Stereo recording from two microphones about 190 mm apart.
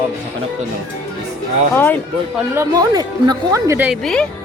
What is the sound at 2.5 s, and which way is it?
Speech, 20° right (ahead or behind).